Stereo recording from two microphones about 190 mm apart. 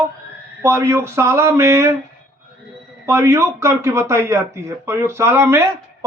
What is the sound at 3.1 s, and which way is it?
A man's voice, 15° right (ahead or behind).